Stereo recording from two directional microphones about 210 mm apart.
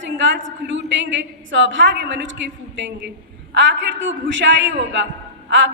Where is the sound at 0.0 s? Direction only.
60° right (ahead or behind).